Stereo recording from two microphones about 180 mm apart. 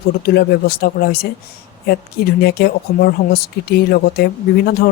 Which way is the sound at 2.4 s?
60° left (ahead or behind).